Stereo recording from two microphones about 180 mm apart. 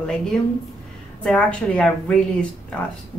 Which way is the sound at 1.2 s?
5° left (ahead or behind).